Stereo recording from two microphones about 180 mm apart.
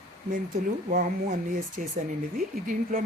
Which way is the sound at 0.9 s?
45° right (ahead or behind).